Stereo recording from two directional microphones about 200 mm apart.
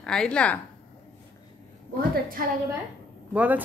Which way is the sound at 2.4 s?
45° right (ahead or behind).